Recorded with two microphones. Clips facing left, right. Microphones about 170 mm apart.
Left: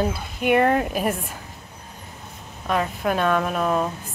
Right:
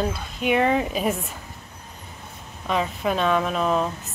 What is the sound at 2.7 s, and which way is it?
Speech, centre (ahead or behind).